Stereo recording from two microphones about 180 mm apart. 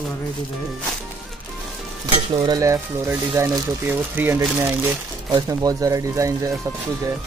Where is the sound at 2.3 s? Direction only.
20° right (ahead or behind).